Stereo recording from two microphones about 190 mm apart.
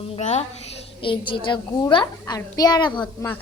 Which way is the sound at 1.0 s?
25° left (ahead or behind).